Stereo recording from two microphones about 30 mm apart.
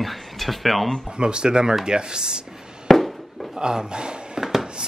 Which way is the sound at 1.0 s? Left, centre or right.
Right.